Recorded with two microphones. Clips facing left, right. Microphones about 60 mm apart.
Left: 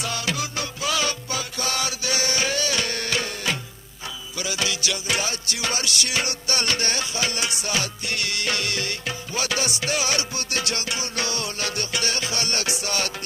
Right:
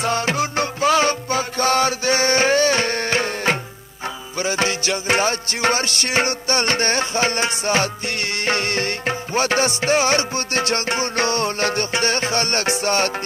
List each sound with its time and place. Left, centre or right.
0.0 s music: right